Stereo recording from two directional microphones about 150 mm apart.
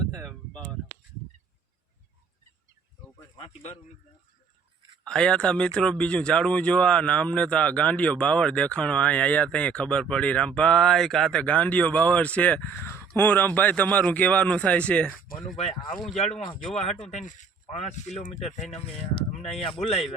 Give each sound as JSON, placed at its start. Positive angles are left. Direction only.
{"t": 0.3, "sound": "a sound", "side_deg": 5}
{"t": 3.3, "sound": "speech", "side_deg": 40}
{"t": 5.0, "sound": "speech", "side_deg": 5}
{"t": 16.7, "sound": "speech", "side_deg": 45}